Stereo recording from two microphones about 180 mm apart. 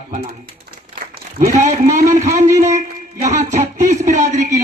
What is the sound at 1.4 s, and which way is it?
Speech, 45° right (ahead or behind).